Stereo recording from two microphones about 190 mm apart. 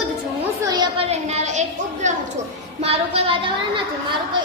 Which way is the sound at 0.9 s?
35° right (ahead or behind).